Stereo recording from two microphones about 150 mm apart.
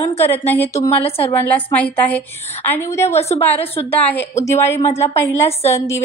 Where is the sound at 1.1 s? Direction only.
40° left (ahead or behind).